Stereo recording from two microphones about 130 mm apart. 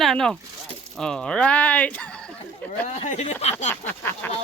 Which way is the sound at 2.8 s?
70° left (ahead or behind).